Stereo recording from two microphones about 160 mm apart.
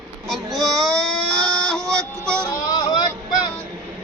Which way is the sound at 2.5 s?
25° left (ahead or behind).